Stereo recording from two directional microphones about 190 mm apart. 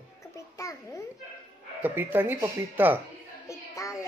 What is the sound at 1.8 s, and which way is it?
Speech, 10° right (ahead or behind).